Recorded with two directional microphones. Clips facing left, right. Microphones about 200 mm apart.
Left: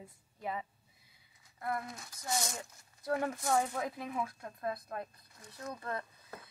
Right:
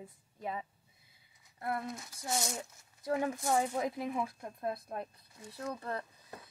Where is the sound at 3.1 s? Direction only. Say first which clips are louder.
Right 1 dB; 10° right (ahead or behind).